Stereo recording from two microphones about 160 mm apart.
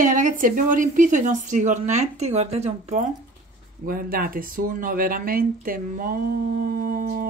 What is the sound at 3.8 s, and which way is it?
Speech, 65° right (ahead or behind).